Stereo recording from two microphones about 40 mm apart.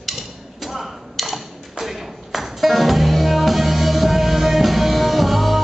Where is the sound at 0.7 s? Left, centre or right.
Centre.